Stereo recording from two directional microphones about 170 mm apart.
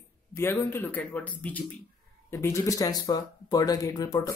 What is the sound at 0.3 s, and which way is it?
Speech, 15° left (ahead or behind).